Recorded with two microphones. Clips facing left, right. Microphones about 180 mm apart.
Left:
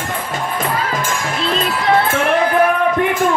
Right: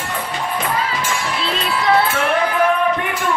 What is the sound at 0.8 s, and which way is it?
Music, 50° left (ahead or behind).